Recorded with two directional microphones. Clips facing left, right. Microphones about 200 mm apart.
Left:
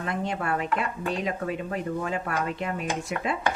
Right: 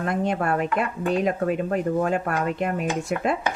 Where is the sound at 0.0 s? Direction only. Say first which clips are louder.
Right 5 dB; 50° right (ahead or behind).